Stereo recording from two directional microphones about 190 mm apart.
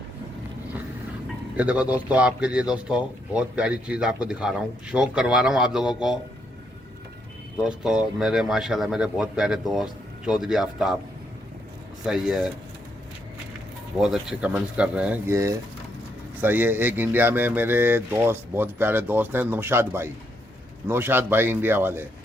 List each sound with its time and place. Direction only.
1.5 s speech: 5° right (ahead or behind)
7.6 s speech: 5° right (ahead or behind)
12.0 s speech: 5° right (ahead or behind)
13.9 s speech: centre (ahead or behind)